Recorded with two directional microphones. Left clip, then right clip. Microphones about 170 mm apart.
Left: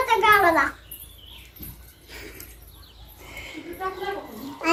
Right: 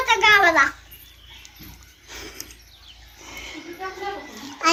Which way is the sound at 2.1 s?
25° right (ahead or behind).